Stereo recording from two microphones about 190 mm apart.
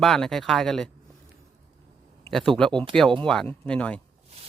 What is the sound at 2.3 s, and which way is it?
Speech, 5° left (ahead or behind).